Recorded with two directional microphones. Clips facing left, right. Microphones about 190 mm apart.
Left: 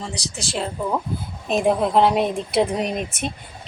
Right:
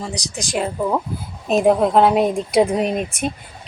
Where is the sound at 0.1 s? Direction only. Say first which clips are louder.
Right 4 dB; 15° right (ahead or behind).